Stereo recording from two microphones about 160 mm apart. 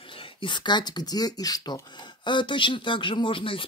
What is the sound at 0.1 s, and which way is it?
Speech, 35° left (ahead or behind).